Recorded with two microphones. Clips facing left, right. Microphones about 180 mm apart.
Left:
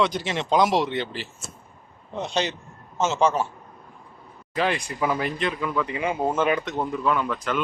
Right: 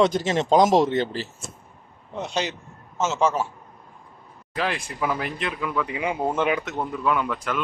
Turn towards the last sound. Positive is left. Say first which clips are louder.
# even
turn(degrees=-5)  # may be behind; listen again after turning